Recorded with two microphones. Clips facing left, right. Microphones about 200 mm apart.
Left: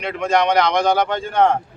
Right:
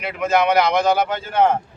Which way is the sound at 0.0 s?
5° right (ahead or behind).